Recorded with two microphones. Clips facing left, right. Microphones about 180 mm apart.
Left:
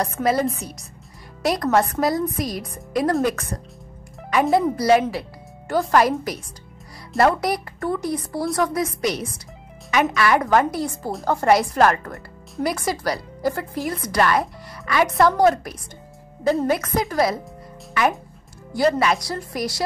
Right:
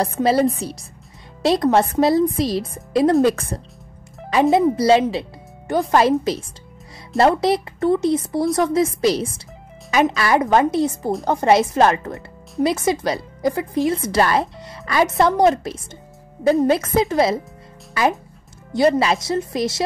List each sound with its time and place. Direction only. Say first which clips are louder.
0.0 s speech: right 4 dB; 30° right (ahead or behind)
18.7 s speech: right 3 dB; 20° right (ahead or behind)